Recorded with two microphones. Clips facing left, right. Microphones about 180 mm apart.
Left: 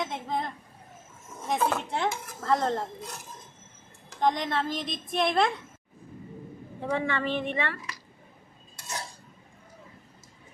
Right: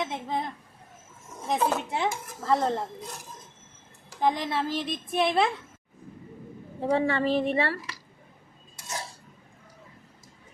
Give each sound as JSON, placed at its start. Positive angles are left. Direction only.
{"t": 0.0, "sound": "a sound", "side_deg": 0}
{"t": 1.5, "sound": "speech", "side_deg": -10}
{"t": 4.2, "sound": "speech", "side_deg": -5}
{"t": 6.7, "sound": "a woman's voice", "side_deg": -35}